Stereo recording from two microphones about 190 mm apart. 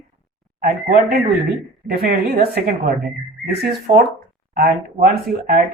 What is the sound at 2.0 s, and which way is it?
Speech, 55° right (ahead or behind).